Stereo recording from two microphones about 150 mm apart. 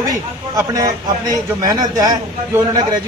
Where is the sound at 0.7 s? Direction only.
25° right (ahead or behind).